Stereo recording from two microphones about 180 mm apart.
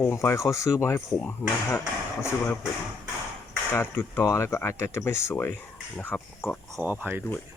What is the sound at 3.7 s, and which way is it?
Speech, 10° left (ahead or behind).